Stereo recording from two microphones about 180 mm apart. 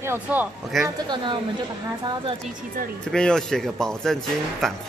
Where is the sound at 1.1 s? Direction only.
25° right (ahead or behind).